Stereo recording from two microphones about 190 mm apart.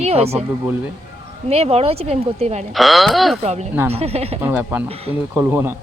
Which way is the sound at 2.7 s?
Centre (ahead or behind).